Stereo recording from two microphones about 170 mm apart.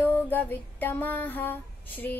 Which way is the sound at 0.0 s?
10° left (ahead or behind).